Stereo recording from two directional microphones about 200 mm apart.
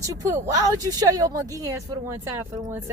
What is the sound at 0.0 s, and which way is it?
Speech, 15° right (ahead or behind).